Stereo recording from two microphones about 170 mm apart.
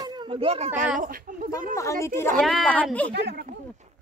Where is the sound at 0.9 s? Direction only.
55° right (ahead or behind).